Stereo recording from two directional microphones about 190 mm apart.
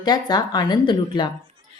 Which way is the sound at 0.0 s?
20° left (ahead or behind).